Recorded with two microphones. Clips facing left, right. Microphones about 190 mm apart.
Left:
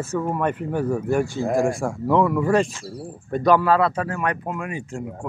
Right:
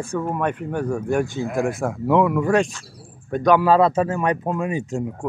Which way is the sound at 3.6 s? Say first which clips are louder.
Right 3 dB; 20° right (ahead or behind).